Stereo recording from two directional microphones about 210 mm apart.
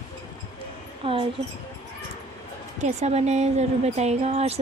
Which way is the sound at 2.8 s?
30° right (ahead or behind).